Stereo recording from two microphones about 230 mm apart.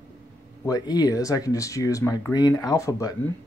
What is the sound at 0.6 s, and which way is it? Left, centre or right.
Speech, centre.